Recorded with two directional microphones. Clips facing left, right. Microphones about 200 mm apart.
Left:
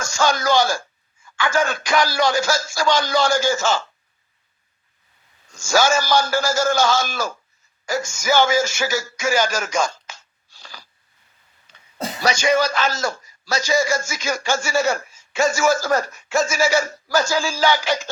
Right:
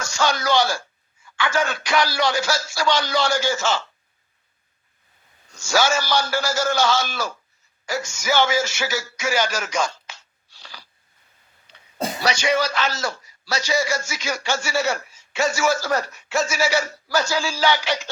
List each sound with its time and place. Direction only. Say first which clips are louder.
0.0 s a man's voice: left 2 dB; 45° left (ahead or behind)
5.5 s a man's voice: left 3 dB; 45° left (ahead or behind)
12.2 s a man's voice: left 3 dB; 45° left (ahead or behind)